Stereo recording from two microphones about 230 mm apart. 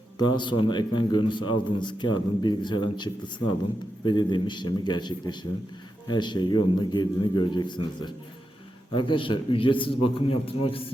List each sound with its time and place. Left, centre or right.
0.2 s a man's voice: centre